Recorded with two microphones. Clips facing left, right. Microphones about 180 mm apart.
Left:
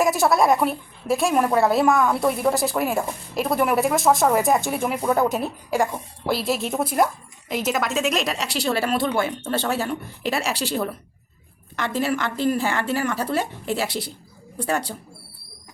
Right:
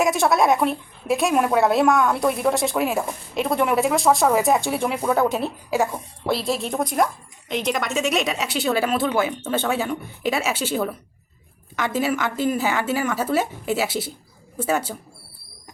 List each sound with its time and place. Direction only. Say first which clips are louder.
0.0 s a woman's voice: even; centre (ahead or behind)